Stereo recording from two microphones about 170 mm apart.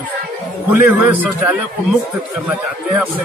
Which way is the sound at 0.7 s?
15° right (ahead or behind).